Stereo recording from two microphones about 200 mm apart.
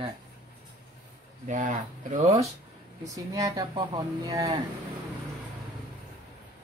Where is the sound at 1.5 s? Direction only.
40° right (ahead or behind).